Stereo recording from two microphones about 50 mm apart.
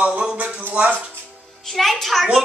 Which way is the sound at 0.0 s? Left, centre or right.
Right.